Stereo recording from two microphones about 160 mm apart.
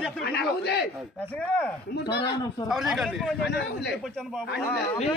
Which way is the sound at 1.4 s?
5° left (ahead or behind).